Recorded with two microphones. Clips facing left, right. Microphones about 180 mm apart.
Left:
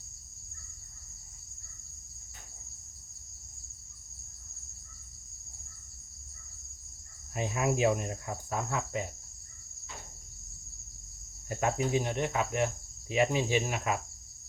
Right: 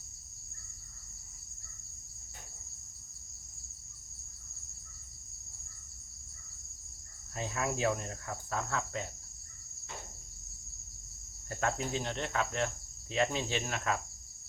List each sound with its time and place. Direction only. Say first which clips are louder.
7.3 s cricket: left 5 dB; 15° left (ahead or behind)
11.4 s cricket: left 4 dB; 15° left (ahead or behind)